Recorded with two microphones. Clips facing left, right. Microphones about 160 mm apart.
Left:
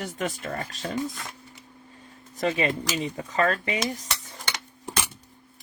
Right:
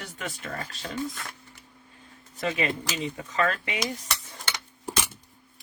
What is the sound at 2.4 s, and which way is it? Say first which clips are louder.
Speech: left 3 dB; 30° left (ahead or behind).